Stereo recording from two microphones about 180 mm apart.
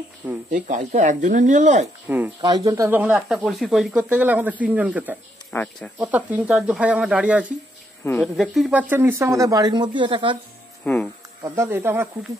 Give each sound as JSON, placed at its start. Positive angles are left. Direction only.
{"t": 0.5, "sound": "speech", "side_deg": -45}
{"t": 2.0, "sound": "speech", "side_deg": -10}
{"t": 5.5, "sound": "speech", "side_deg": 10}
{"t": 5.9, "sound": "speech", "side_deg": -10}
{"t": 8.0, "sound": "speech", "side_deg": 10}
{"t": 8.4, "sound": "speech", "side_deg": 0}
{"t": 10.8, "sound": "speech", "side_deg": 5}
{"t": 11.4, "sound": "speech", "side_deg": -15}